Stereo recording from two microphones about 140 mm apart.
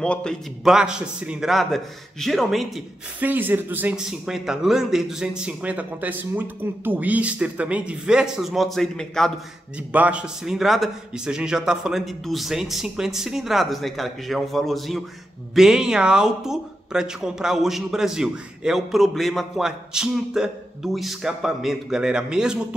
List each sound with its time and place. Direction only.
0.0 s speech: 5° left (ahead or behind)
3.2 s a man's voice: 10° right (ahead or behind); by 9.3 s 5° left (ahead or behind)
9.8 s speech: 10° right (ahead or behind)